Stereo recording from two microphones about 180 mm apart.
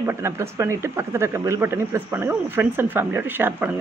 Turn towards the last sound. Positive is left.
turn(degrees=-10)  # may be behind; listen again after turning